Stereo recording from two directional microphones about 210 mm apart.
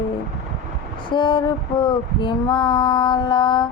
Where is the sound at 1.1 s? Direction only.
20° left (ahead or behind).